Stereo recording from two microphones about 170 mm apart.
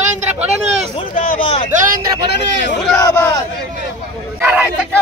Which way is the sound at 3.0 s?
20° left (ahead or behind).